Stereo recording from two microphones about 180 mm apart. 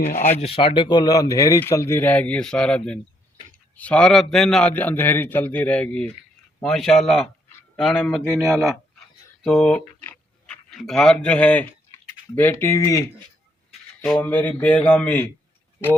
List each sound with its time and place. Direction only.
0.1 s speech: 45° left (ahead or behind); by 8.8 s centre (ahead or behind)
9.4 s a sound: 5° left (ahead or behind)
12.4 s speech: 15° left (ahead or behind)
14.0 s speech: 5° left (ahead or behind)